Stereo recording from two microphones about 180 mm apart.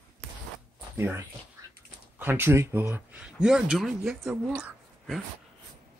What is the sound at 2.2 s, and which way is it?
Speech, 10° right (ahead or behind).